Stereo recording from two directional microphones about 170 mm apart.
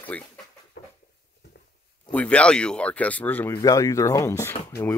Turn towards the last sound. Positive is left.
turn(degrees=15)  # may be behind; listen again after turning